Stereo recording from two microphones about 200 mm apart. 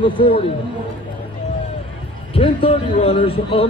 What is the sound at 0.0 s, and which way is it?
Speech, 25° left (ahead or behind).